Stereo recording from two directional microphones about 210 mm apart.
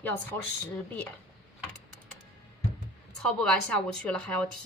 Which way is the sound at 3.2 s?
5° left (ahead or behind).